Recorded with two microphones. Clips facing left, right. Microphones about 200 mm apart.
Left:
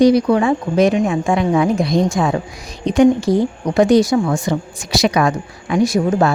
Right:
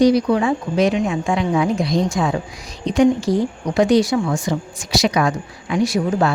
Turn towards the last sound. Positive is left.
turn(degrees=45)  # may be behind; listen again after turning